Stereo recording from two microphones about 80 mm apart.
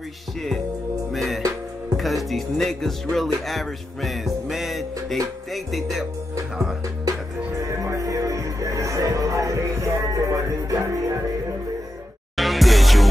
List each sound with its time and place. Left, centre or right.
1.1 s music: centre
2.0 s speech: centre
5.5 s music: centre
7.6 s music: right
12.4 s music: centre